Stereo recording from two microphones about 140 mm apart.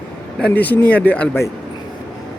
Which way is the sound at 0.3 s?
10° left (ahead or behind).